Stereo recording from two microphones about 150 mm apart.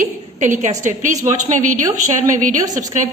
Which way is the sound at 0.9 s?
55° right (ahead or behind).